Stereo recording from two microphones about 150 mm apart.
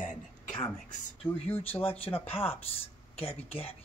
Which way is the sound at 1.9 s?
40° left (ahead or behind).